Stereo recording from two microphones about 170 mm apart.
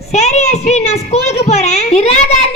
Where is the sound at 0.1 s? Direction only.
40° left (ahead or behind).